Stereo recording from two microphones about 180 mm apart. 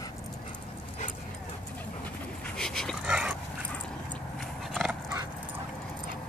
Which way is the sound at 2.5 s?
5° left (ahead or behind).